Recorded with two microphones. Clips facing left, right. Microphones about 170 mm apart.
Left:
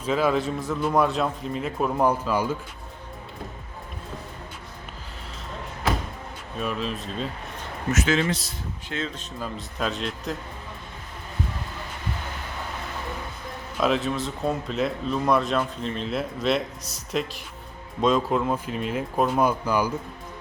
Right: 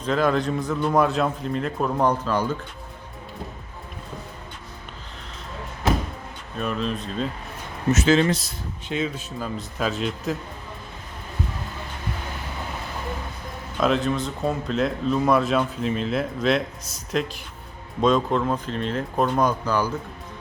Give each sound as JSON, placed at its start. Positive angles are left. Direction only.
{"t": 0.0, "sound": "speech", "side_deg": 5}
{"t": 6.6, "sound": "speech", "side_deg": 5}
{"t": 7.9, "sound": "speech", "side_deg": -30}
{"t": 8.9, "sound": "speech", "side_deg": -10}
{"t": 13.7, "sound": "speech", "side_deg": 0}